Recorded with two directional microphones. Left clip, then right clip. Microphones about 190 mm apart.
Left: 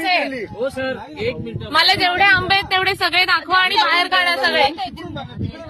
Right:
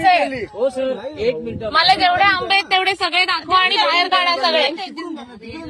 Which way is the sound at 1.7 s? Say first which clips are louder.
Right 1 dB; 45° left (ahead or behind).